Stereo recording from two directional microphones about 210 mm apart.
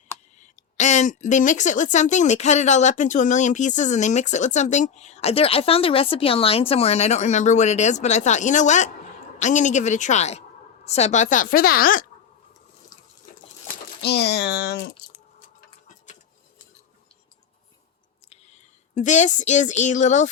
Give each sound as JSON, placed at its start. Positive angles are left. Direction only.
{"t": 0.3, "sound": "speech", "side_deg": 35}
{"t": 14.0, "sound": "speech", "side_deg": 50}
{"t": 18.3, "sound": "speech", "side_deg": 30}